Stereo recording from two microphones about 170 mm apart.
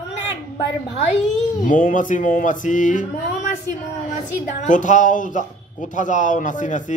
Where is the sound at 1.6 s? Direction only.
50° left (ahead or behind).